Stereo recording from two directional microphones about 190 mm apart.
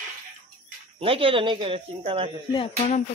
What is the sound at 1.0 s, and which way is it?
Speech, 30° right (ahead or behind).